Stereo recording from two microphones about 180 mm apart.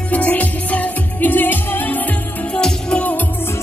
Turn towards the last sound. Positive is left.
turn(degrees=10)  # may be behind; listen again after turning